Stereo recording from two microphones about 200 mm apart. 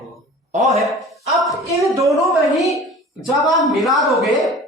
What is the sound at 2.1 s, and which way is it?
A woman's voice, centre (ahead or behind).